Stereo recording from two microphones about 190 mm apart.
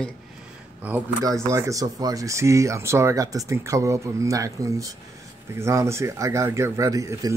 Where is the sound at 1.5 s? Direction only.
15° right (ahead or behind).